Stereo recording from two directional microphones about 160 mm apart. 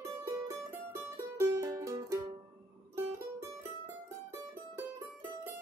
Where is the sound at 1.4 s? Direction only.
20° right (ahead or behind).